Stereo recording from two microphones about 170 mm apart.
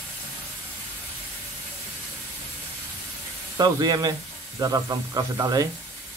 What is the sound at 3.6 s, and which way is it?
Speech, 25° right (ahead or behind).